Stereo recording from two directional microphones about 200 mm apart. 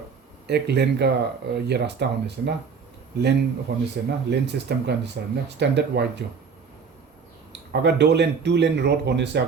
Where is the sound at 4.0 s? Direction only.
55° right (ahead or behind).